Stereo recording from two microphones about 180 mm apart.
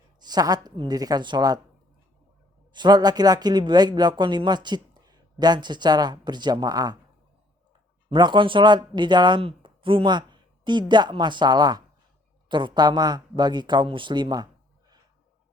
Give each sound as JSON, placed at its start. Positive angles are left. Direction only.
{"t": 0.2, "sound": "speech", "side_deg": -20}
{"t": 2.7, "sound": "speech", "side_deg": -25}
{"t": 8.1, "sound": "speech", "side_deg": -25}